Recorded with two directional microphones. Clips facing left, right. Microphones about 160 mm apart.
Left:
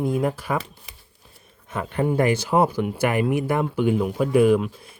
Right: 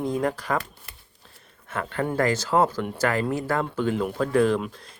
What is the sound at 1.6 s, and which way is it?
Speech, 15° left (ahead or behind).